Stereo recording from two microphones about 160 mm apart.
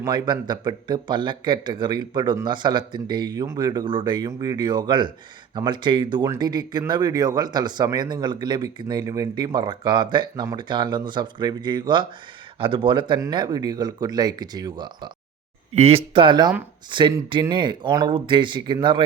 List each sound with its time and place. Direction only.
0.0 s speech: 25° right (ahead or behind)